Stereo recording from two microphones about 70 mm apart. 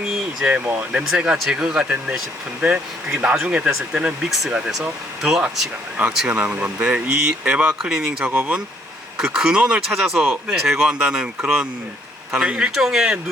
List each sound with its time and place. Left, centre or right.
0.5 s speech: right
1.1 s speech: centre
6.0 s speech: centre
7.8 s speech: centre
8.3 s speech: right
9.1 s speech: centre